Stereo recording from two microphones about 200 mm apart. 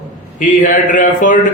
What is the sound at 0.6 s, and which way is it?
Speech, 40° left (ahead or behind).